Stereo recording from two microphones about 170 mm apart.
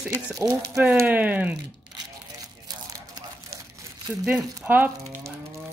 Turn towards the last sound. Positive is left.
turn(degrees=-15)  # may be behind; listen again after turning